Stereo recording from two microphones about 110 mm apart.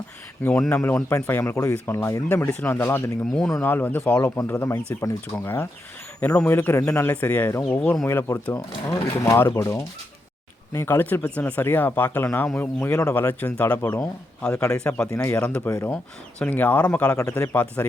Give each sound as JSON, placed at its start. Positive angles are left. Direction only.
{"t": 0.4, "sound": "speech", "side_deg": 10}
{"t": 3.2, "sound": "speech", "side_deg": 5}
{"t": 3.6, "sound": "speech", "side_deg": 20}
{"t": 6.1, "sound": "speech", "side_deg": 15}
{"t": 7.1, "sound": "speech", "side_deg": 15}
{"t": 15.1, "sound": "speech", "side_deg": 25}
{"t": 15.4, "sound": "speech", "side_deg": 10}
{"t": 15.6, "sound": "speech", "side_deg": 20}
{"t": 17.2, "sound": "speech", "side_deg": 25}
{"t": 17.5, "sound": "speech", "side_deg": 15}